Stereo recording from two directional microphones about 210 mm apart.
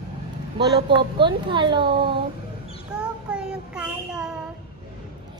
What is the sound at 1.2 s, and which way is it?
Speech, 25° right (ahead or behind).